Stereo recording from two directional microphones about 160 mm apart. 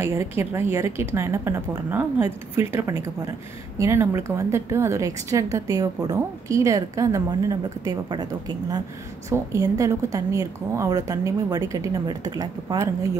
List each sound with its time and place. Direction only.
0.0 s a woman's voice: 15° right (ahead or behind)